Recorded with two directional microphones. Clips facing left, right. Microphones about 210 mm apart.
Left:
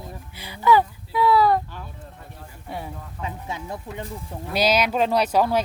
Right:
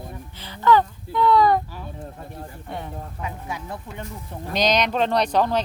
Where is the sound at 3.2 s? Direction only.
25° left (ahead or behind).